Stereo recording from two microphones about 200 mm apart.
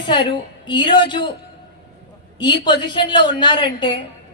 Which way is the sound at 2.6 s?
20° left (ahead or behind).